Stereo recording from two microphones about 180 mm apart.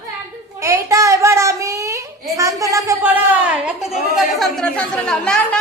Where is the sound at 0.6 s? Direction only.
15° right (ahead or behind).